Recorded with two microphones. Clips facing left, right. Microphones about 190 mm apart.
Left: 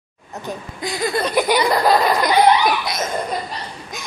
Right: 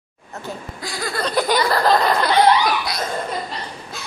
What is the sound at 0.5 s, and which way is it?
Speech, 20° left (ahead or behind).